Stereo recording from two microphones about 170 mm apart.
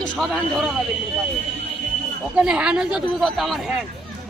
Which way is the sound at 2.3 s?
5° right (ahead or behind).